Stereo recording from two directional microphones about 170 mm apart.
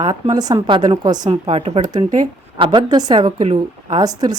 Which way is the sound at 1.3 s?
35° right (ahead or behind).